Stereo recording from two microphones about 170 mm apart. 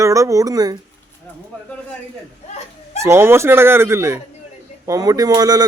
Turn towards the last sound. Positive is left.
turn(degrees=-20)  # may be behind; listen again after turning